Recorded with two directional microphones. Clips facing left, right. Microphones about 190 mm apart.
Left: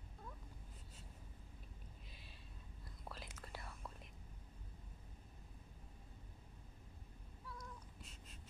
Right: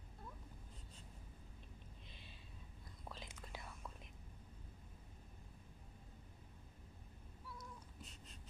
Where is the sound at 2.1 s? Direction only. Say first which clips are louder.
Right 1 dB; 5° left (ahead or behind).